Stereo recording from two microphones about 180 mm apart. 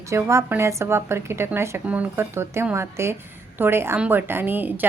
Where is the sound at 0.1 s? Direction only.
15° right (ahead or behind).